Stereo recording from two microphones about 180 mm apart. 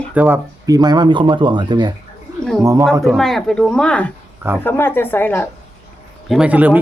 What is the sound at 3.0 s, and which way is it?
Speech, centre (ahead or behind).